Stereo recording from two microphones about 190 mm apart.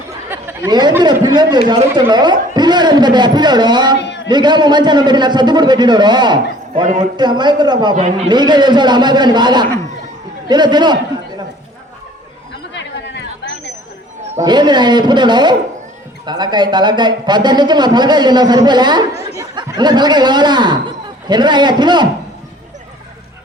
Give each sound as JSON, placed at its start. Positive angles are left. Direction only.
{"t": 0.3, "sound": "chatter", "side_deg": -10}
{"t": 1.0, "sound": "speech", "side_deg": -20}
{"t": 3.9, "sound": "a sound", "side_deg": 65}
{"t": 4.3, "sound": "speech", "side_deg": -25}
{"t": 6.8, "sound": "a man's voice", "side_deg": -40}
{"t": 7.2, "sound": "speech", "side_deg": -25}
{"t": 7.9, "sound": "a man's voice", "side_deg": -35}
{"t": 8.3, "sound": "speech", "side_deg": -25}
{"t": 12.7, "sound": "a sound", "side_deg": 70}
{"t": 14.3, "sound": "speech", "side_deg": -20}